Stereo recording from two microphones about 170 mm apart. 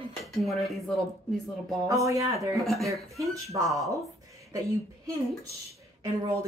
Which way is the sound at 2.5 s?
Centre (ahead or behind).